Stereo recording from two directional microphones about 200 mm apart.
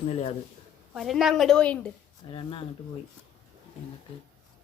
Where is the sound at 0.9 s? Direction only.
Centre (ahead or behind).